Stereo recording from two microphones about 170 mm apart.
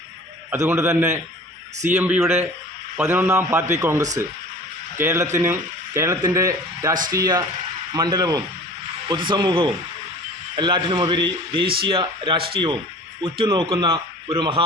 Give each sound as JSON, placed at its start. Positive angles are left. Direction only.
{"t": 0.5, "sound": "speech", "side_deg": -15}
{"t": 4.9, "sound": "a man's voice", "side_deg": -15}